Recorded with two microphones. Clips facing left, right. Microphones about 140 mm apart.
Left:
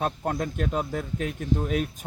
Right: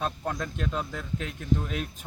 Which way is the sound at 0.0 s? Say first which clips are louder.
Left 4 dB; 45° left (ahead or behind).